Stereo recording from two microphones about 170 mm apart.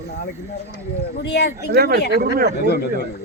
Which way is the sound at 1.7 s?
70° right (ahead or behind).